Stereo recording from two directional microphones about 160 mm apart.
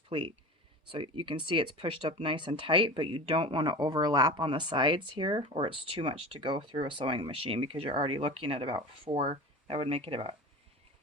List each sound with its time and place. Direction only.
0.1 s speech: 30° right (ahead or behind)